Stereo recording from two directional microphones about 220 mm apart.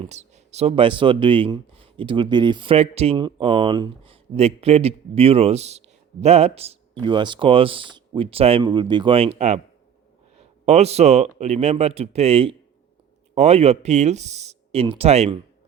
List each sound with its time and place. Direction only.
0.0 s speech: 30° right (ahead or behind)